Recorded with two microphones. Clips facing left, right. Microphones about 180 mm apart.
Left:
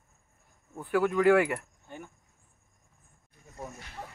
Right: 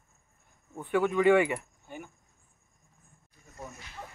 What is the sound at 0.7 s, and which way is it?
Speech, centre (ahead or behind).